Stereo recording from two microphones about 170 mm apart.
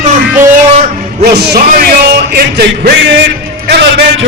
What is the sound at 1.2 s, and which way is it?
Music, 75° right (ahead or behind).